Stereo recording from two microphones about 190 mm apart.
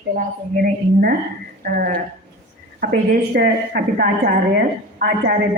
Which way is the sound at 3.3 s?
50° right (ahead or behind).